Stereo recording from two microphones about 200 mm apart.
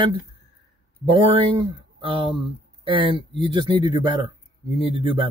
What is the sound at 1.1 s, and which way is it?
Speech, 25° right (ahead or behind).